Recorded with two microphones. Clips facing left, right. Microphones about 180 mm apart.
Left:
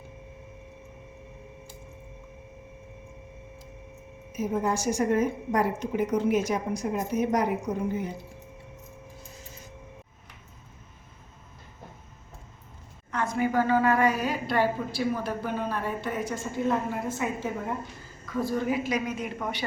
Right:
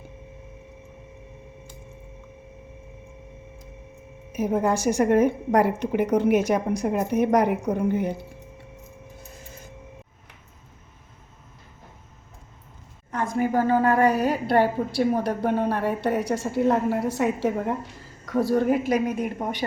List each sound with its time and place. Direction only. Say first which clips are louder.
4.3 s a woman's voice: right 5 dB; 65° right (ahead or behind)
13.3 s speech: right 3 dB; 40° right (ahead or behind)
14.3 s a woman's voice: right 5 dB; 60° right (ahead or behind)
18.9 s a woman's voice: right 6 dB; 55° right (ahead or behind)